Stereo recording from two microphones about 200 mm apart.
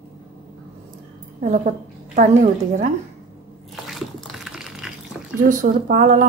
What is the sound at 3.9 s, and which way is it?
Liquid, centre (ahead or behind).